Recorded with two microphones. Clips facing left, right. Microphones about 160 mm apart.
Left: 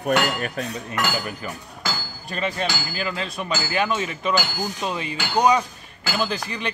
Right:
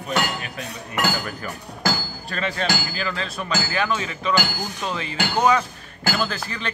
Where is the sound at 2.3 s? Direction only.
15° left (ahead or behind).